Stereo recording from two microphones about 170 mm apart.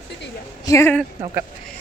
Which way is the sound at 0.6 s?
15° left (ahead or behind).